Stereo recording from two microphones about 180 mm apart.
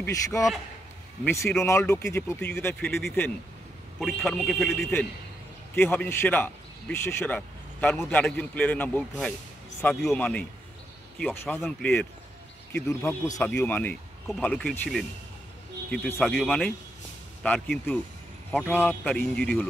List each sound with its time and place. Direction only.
0.0 s a man's voice: 15° left (ahead or behind)
16.2 s a man's voice: centre (ahead or behind)